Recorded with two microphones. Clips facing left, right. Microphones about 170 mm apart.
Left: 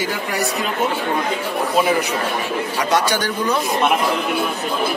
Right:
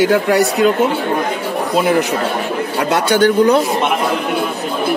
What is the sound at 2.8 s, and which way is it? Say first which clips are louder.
Speech: right 6 dB; 60° right (ahead or behind).